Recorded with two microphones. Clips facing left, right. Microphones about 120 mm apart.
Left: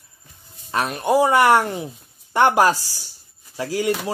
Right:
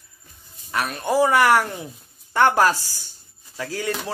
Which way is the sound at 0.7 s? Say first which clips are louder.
Left 3 dB; 25° left (ahead or behind).